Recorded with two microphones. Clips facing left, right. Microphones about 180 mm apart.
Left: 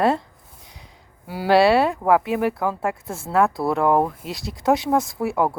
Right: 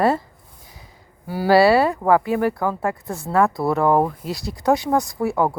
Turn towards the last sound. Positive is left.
turn(degrees=0)  # may be behind; listen again after turning